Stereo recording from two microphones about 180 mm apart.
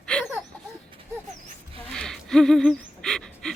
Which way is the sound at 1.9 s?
5° left (ahead or behind).